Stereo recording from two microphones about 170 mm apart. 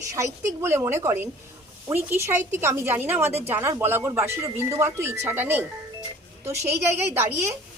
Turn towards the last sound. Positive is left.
turn(degrees=-15)  # may be behind; listen again after turning